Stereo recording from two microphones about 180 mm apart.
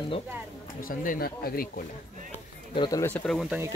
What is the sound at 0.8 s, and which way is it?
Speech, 50° left (ahead or behind).